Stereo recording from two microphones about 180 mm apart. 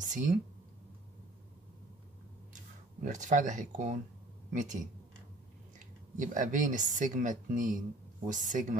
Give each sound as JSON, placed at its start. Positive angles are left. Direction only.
{"t": 0.0, "sound": "speech", "side_deg": -45}
{"t": 3.0, "sound": "speech", "side_deg": -45}